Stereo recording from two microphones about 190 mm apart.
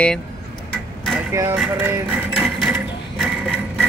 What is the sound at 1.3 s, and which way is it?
Music, 15° right (ahead or behind).